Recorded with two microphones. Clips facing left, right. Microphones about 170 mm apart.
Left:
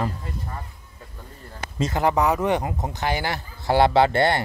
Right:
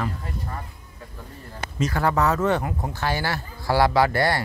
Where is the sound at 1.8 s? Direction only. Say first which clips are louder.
Left 1 dB; 20° left (ahead or behind).